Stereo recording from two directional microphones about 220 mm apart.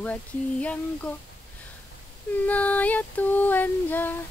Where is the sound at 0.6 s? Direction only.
5° left (ahead or behind).